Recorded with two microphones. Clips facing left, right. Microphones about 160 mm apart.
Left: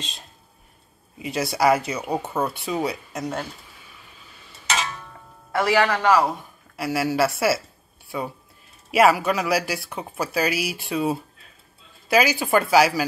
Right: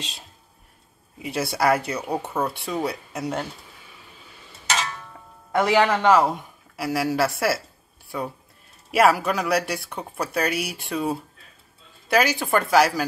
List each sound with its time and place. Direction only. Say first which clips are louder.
0.0 s speech: even; 10° right (ahead or behind)
5.5 s a man's voice: right 1 dB; 20° right (ahead or behind)
6.8 s speech: left 1 dB; centre (ahead or behind)
8.9 s speech: left 1 dB; centre (ahead or behind)